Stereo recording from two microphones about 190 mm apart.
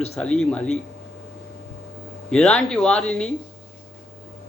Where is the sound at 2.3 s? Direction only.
5° left (ahead or behind).